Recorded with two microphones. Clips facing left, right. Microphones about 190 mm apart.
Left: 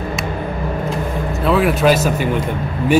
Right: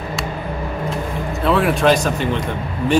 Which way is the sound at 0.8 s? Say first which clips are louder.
Left 2 dB; centre (ahead or behind).